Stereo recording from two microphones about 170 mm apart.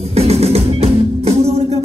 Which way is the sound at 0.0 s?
35° right (ahead or behind).